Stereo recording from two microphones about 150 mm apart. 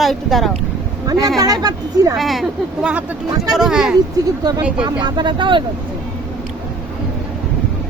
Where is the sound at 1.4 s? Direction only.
25° right (ahead or behind).